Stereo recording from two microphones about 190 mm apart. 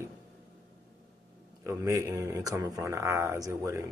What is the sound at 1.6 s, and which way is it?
Speech, 15° right (ahead or behind).